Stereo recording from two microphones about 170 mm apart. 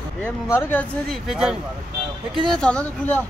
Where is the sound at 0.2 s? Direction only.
15° left (ahead or behind).